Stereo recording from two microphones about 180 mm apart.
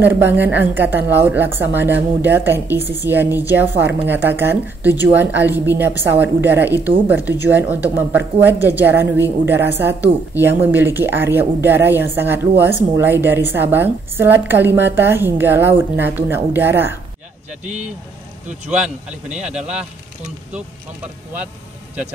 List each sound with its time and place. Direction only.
0.0 s a woman's voice: 10° right (ahead or behind)
17.6 s speech: 40° right (ahead or behind)
18.7 s a woman's voice: 5° right (ahead or behind)